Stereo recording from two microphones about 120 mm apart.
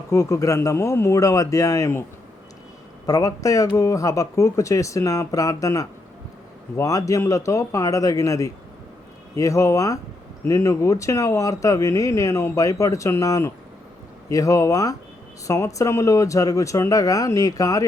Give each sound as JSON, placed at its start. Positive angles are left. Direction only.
{"t": 0.1, "sound": "speech", "side_deg": 25}
{"t": 3.1, "sound": "speech", "side_deg": 25}